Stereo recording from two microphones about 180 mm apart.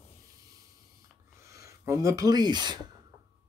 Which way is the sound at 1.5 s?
15° right (ahead or behind).